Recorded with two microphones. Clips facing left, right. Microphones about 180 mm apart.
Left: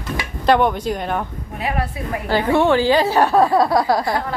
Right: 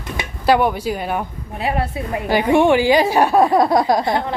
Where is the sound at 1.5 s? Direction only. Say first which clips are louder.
Right 2 dB; 25° right (ahead or behind).